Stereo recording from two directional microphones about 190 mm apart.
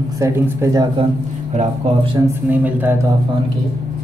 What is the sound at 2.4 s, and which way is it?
Speech, 10° right (ahead or behind).